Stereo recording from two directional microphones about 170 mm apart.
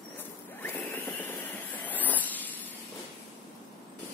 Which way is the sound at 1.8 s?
10° left (ahead or behind).